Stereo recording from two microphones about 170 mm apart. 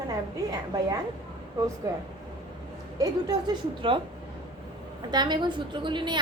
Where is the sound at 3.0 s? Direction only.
25° right (ahead or behind).